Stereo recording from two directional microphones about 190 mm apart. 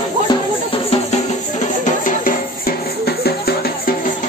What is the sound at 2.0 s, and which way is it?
Music, 50° left (ahead or behind).